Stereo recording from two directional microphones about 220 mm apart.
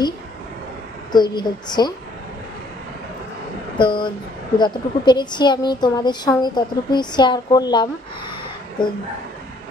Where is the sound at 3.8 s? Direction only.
20° left (ahead or behind).